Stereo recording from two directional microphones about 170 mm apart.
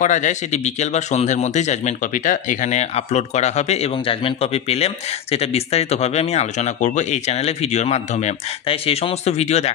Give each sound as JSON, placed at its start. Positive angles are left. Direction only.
{"t": 0.0, "sound": "a man's voice", "side_deg": 45}